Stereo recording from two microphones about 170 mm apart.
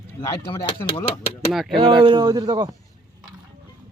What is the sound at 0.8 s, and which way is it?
Speech, 30° left (ahead or behind).